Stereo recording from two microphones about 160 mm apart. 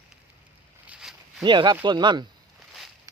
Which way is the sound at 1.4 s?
30° right (ahead or behind).